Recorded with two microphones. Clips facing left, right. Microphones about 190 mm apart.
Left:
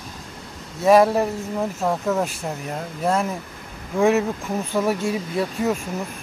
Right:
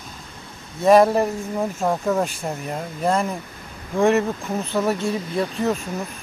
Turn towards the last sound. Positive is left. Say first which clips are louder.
# even
turn(degrees=10)  # may be behind; listen again after turning